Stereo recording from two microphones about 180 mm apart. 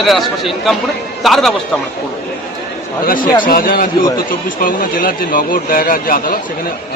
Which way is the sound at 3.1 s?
50° left (ahead or behind).